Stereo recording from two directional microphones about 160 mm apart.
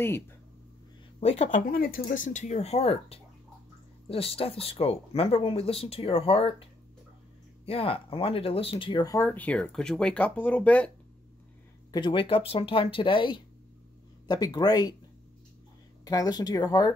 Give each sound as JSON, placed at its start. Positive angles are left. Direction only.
{"t": 1.2, "sound": "speech", "side_deg": 40}
{"t": 1.7, "sound": "speech", "side_deg": 65}
{"t": 11.9, "sound": "speech", "side_deg": 30}
{"t": 16.0, "sound": "speech", "side_deg": 25}